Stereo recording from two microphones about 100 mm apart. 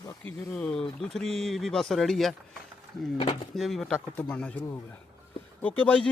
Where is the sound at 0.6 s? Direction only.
10° left (ahead or behind).